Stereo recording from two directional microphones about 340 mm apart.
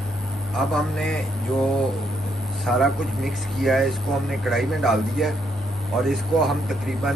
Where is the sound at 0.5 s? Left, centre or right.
Centre.